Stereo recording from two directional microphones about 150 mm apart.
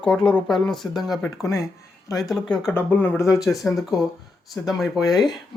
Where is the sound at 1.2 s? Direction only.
20° left (ahead or behind).